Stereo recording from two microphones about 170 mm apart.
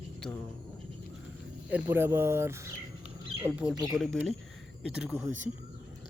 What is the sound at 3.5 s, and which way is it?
Speech, 5° right (ahead or behind).